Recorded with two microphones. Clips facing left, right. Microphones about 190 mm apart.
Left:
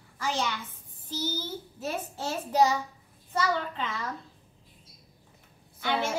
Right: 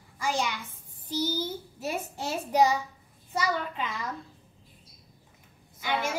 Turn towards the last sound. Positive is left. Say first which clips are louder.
# left 1 dB
turn(degrees=-10)  # may be behind; listen again after turning